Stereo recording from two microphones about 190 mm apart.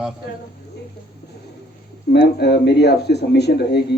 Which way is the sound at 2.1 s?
55° left (ahead or behind).